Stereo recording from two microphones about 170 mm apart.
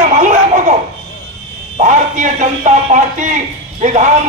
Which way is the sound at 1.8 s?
45° right (ahead or behind).